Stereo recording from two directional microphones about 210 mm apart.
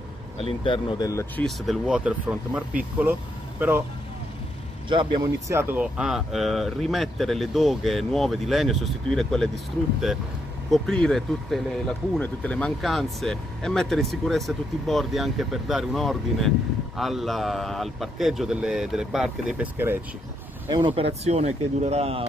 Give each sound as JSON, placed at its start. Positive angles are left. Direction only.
{"t": 0.4, "sound": "speech", "side_deg": 25}
{"t": 1.4, "sound": "speech", "side_deg": 0}
{"t": 4.8, "sound": "speech", "side_deg": -20}
{"t": 10.7, "sound": "speech", "side_deg": 0}
{"t": 20.7, "sound": "speech", "side_deg": -25}